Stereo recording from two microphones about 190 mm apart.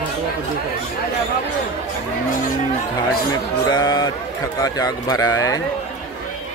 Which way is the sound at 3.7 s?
20° left (ahead or behind).